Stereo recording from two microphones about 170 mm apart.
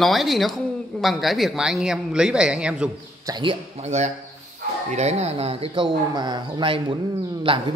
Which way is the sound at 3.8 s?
40° right (ahead or behind).